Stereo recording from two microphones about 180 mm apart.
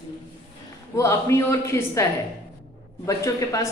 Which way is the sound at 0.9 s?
15° left (ahead or behind).